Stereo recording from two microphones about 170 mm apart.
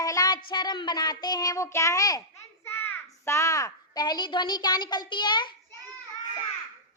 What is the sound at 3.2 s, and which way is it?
A woman's voice, 15° left (ahead or behind).